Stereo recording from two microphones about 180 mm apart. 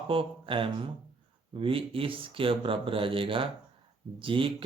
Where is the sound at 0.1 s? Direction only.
30° right (ahead or behind).